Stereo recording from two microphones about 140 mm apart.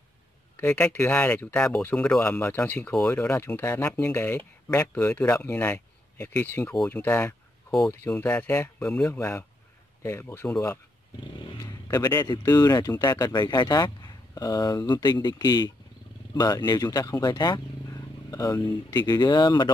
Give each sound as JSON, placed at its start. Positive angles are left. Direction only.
{"t": 0.6, "sound": "speech", "side_deg": 20}
{"t": 1.1, "sound": "speech", "side_deg": 5}
{"t": 11.6, "sound": "vehicle", "side_deg": 25}
{"t": 12.3, "sound": "speech", "side_deg": 25}